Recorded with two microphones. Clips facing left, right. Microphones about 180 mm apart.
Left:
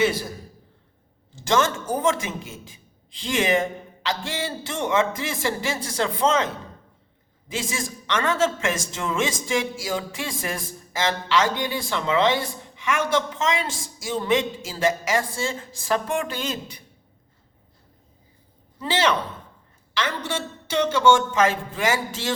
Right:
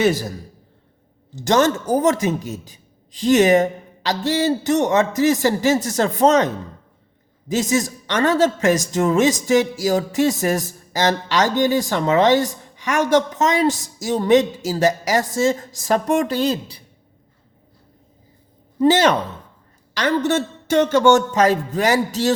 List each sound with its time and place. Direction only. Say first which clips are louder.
1.4 s a man's voice: right 5 dB; 35° right (ahead or behind)
18.8 s a man's voice: right 8 dB; 45° right (ahead or behind)